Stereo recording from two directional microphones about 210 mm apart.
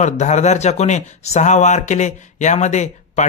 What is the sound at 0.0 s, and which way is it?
Speech, 35° left (ahead or behind).